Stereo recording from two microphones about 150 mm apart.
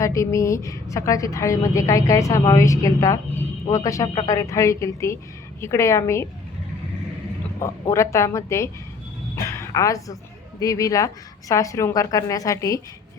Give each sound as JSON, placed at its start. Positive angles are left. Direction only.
{"t": 0.0, "sound": "a woman's voice", "side_deg": 20}
{"t": 7.6, "sound": "a woman's voice", "side_deg": 20}